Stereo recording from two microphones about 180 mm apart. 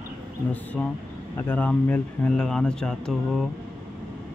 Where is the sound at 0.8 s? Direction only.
5° left (ahead or behind).